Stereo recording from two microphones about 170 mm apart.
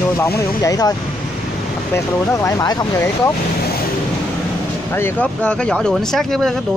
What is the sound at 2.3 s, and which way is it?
Speech, 20° left (ahead or behind).